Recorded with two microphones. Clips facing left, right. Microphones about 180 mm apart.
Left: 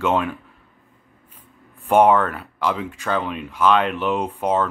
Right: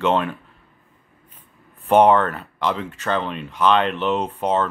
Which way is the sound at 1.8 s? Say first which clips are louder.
Right 1 dB; 10° left (ahead or behind).